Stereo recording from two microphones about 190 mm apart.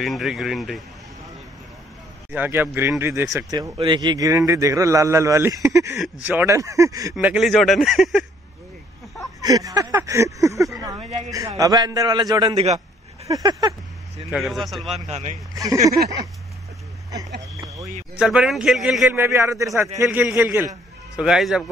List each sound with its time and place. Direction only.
0.0 s speech: centre (ahead or behind)
2.3 s speech: 10° right (ahead or behind)
5.9 s speech: 5° right (ahead or behind)
9.4 s a man's voice: 20° right (ahead or behind)
13.3 s a man's voice: 20° right (ahead or behind)
14.3 s speech: centre (ahead or behind)
15.0 s speech: 35° right (ahead or behind)
15.5 s speech: 20° right (ahead or behind)
17.6 s a sound: 15° right (ahead or behind)
18.2 s speech: 5° right (ahead or behind)